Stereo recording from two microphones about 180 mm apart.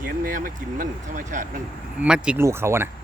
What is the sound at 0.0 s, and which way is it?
Speech, 50° right (ahead or behind).